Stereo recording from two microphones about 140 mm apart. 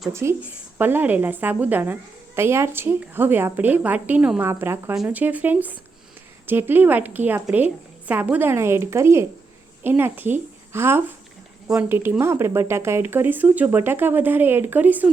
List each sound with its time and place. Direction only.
0.1 s a woman's voice: 20° right (ahead or behind)